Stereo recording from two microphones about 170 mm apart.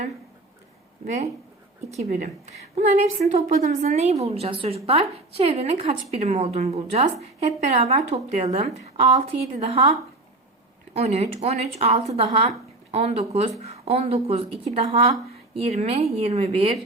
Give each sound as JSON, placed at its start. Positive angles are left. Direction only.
{"t": 1.0, "sound": "a woman's voice", "side_deg": -45}
{"t": 10.9, "sound": "a woman's voice", "side_deg": -40}